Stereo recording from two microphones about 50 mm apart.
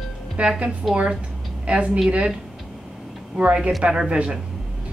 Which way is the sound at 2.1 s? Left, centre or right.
Right.